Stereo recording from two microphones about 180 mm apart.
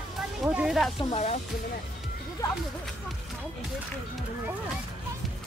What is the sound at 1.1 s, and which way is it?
Speech, 40° left (ahead or behind).